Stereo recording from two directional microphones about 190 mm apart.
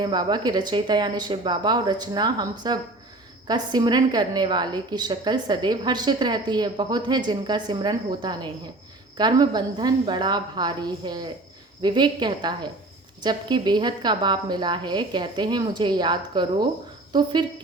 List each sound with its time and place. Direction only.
0.0 s a woman's voice: 25° right (ahead or behind)